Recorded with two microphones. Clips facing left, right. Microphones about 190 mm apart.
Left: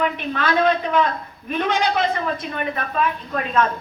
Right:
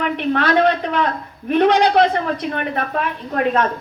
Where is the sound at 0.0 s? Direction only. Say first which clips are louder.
Right 4 dB; 70° right (ahead or behind).